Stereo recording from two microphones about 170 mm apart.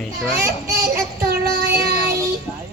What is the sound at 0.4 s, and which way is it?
Child singing, 65° right (ahead or behind).